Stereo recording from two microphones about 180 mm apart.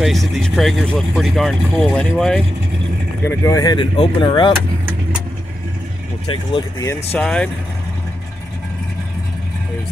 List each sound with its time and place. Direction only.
0.0 s speech: centre (ahead or behind)
3.3 s speech: 20° left (ahead or behind)
6.2 s speech: 25° left (ahead or behind)
7.2 s speech: 5° left (ahead or behind)